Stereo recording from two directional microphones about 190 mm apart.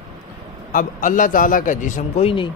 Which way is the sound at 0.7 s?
45° left (ahead or behind).